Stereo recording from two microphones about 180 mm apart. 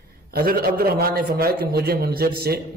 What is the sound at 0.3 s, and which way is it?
A man's voice, 55° right (ahead or behind).